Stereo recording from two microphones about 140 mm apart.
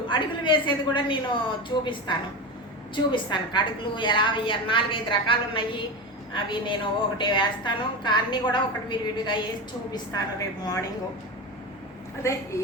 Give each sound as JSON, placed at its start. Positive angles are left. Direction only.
{"t": 0.1, "sound": "a woman's voice", "side_deg": 35}
{"t": 10.6, "sound": "a woman's voice", "side_deg": 25}
{"t": 12.2, "sound": "a woman's voice", "side_deg": 20}